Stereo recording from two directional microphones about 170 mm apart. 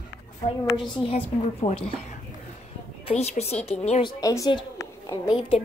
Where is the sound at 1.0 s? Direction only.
35° left (ahead or behind).